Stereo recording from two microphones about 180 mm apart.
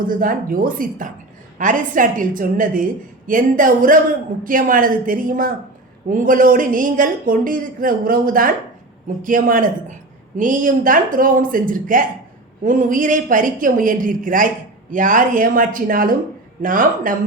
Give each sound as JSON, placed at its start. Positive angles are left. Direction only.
{"t": 0.2, "sound": "speech", "side_deg": -50}